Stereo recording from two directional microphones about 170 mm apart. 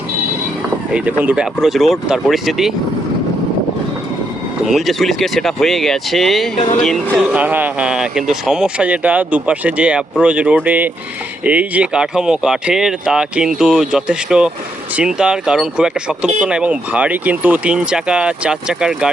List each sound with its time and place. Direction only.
0.9 s speech: 10° right (ahead or behind)
4.6 s speech: centre (ahead or behind)
6.6 s speech: 40° left (ahead or behind)
7.1 s speech: 10° right (ahead or behind)